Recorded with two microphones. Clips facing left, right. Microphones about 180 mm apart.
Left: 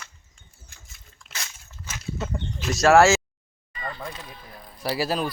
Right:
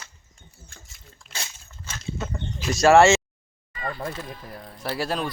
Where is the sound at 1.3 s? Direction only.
30° right (ahead or behind).